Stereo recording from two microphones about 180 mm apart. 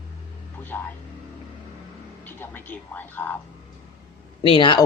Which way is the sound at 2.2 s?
10° left (ahead or behind).